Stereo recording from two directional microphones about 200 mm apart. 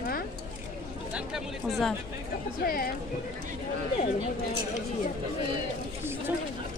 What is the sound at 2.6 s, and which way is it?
Speech, 45° left (ahead or behind).